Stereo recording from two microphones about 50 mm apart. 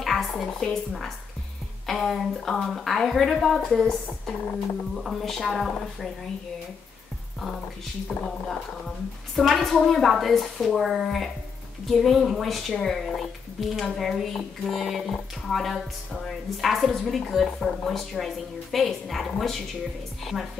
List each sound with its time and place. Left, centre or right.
0.0 s a woman's voice: centre
8.3 s a woman's voice: centre